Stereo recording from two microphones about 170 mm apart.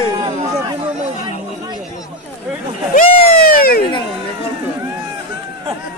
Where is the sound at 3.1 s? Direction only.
35° left (ahead or behind).